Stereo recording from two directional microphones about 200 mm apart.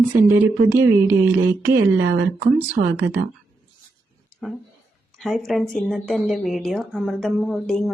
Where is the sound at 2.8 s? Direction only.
45° right (ahead or behind).